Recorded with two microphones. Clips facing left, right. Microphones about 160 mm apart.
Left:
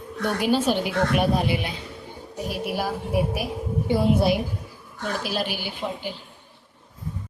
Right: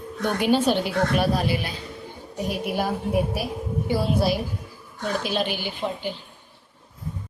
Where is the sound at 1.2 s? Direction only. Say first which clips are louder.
Left 1 dB; 20° left (ahead or behind).